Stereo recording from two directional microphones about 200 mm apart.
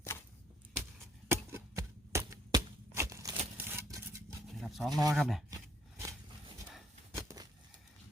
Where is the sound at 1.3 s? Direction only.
15° right (ahead or behind).